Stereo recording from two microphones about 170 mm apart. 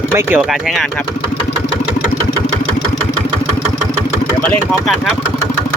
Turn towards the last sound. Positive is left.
turn(degrees=5)  # may be behind; listen again after turning